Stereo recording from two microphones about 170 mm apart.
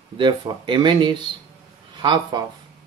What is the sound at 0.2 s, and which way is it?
Speech, 30° right (ahead or behind).